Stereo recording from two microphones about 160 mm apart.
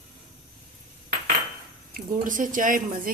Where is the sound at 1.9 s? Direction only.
55° right (ahead or behind).